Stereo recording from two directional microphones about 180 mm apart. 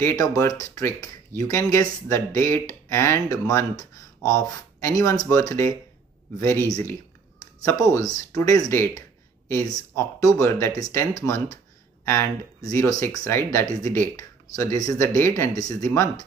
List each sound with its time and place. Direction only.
0.0 s speech: 20° left (ahead or behind)
6.7 s speech: 15° left (ahead or behind)